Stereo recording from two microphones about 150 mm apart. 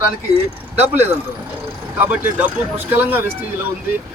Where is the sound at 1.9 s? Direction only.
10° right (ahead or behind).